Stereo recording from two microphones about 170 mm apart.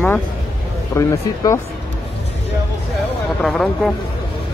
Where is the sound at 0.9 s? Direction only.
15° left (ahead or behind).